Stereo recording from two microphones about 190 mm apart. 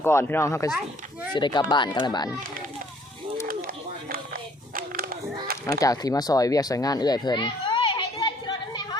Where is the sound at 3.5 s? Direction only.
50° right (ahead or behind).